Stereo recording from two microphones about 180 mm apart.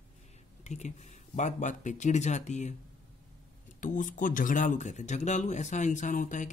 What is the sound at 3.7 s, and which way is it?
Speech, 45° left (ahead or behind).